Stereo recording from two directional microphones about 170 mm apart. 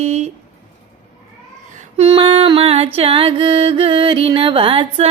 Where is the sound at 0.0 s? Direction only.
40° right (ahead or behind).